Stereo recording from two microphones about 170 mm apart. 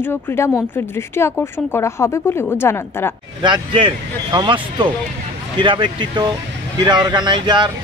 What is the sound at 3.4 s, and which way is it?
Speech, 25° right (ahead or behind).